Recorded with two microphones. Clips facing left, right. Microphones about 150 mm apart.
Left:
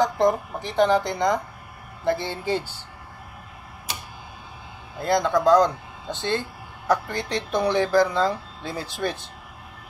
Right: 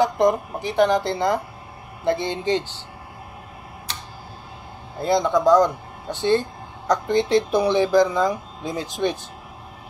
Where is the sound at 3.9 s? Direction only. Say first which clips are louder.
Left 1 dB; 10° left (ahead or behind).